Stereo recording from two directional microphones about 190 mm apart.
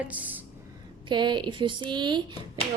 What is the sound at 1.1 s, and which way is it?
Speech, 25° right (ahead or behind).